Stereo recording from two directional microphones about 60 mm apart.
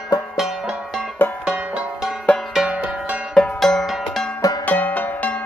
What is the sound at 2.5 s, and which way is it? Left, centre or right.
Music, centre.